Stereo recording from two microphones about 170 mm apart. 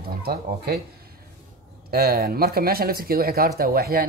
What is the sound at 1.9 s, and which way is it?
A man's voice, 65° right (ahead or behind).